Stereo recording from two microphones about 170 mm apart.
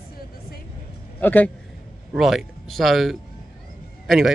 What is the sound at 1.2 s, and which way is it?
Speech, 10° left (ahead or behind).